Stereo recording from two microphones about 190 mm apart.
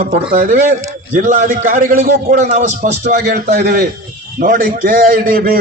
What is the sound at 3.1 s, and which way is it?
A man's voice, 55° right (ahead or behind).